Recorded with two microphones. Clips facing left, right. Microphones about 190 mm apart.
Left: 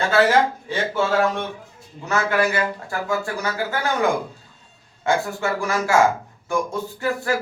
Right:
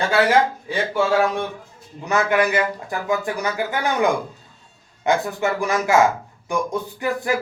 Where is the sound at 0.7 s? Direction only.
15° right (ahead or behind).